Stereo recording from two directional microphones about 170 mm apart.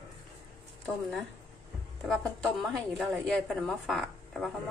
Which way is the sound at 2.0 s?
Centre (ahead or behind).